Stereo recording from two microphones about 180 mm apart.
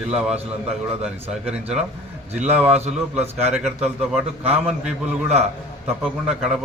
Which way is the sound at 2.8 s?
35° right (ahead or behind).